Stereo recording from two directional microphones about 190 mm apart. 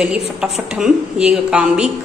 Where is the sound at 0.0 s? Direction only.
5° right (ahead or behind).